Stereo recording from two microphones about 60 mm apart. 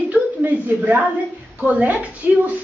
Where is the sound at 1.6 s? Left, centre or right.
Right.